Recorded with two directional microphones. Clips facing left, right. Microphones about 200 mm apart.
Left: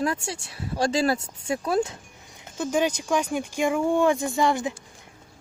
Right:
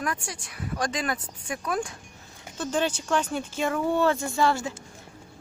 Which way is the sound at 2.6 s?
10° left (ahead or behind).